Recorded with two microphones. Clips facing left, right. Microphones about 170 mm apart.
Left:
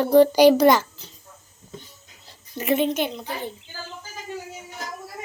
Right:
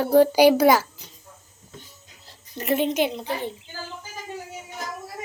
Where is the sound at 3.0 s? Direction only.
25° right (ahead or behind).